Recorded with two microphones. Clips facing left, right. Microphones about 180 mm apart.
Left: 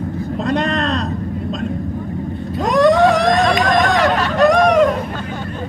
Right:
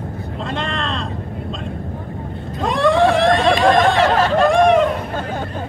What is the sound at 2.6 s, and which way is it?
Vehicle, 40° left (ahead or behind).